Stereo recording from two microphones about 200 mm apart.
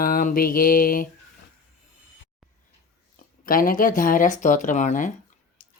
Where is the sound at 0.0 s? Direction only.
45° left (ahead or behind).